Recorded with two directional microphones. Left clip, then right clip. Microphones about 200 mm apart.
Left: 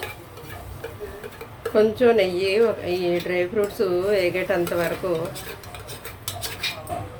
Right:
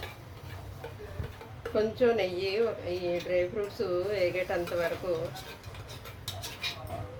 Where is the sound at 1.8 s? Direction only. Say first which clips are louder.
Left 9 dB; 20° left (ahead or behind).